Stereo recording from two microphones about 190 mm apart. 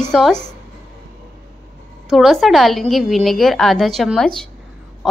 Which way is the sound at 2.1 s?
Centre (ahead or behind).